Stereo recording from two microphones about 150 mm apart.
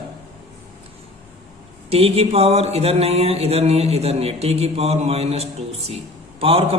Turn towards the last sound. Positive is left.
turn(degrees=-40)  # may be behind; listen again after turning